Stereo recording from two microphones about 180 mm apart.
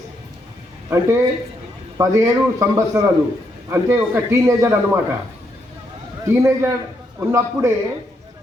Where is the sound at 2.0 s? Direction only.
15° right (ahead or behind).